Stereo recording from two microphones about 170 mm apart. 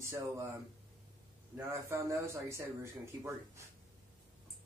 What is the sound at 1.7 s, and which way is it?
Speech, 15° right (ahead or behind).